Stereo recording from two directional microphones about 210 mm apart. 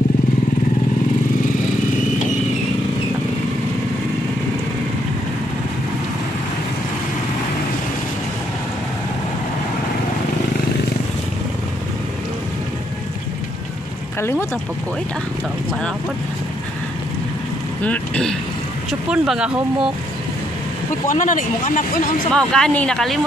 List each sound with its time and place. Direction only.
14.2 s speech: 10° left (ahead or behind)
17.8 s speech: 5° left (ahead or behind)
21.1 s speech: 40° left (ahead or behind)
22.3 s speech: 5° left (ahead or behind)